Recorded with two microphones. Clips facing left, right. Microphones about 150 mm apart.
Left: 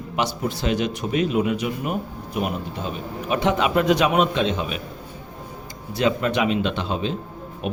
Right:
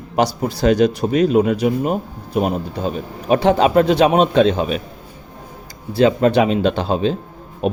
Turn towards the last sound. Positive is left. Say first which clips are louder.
# right 7 dB
turn(degrees=-35)  # may be behind; listen again after turning